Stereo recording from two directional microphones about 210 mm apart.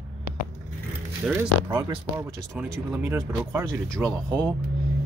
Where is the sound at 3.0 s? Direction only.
15° right (ahead or behind).